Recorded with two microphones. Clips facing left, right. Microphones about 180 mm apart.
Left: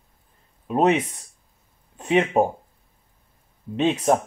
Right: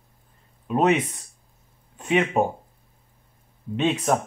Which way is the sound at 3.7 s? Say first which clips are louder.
Left 2 dB; 30° left (ahead or behind).